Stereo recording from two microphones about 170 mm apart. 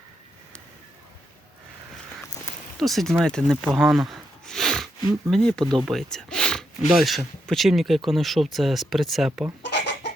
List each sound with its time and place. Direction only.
2.7 s speech: centre (ahead or behind)
9.6 s chicken: 90° left